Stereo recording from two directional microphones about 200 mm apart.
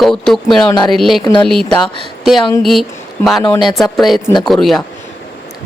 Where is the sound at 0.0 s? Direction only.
Centre (ahead or behind).